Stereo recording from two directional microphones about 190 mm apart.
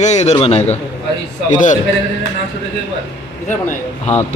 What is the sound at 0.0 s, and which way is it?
A man's voice, 35° left (ahead or behind).